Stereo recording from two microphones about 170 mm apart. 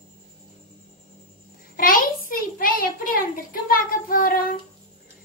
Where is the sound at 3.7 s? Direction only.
55° left (ahead or behind).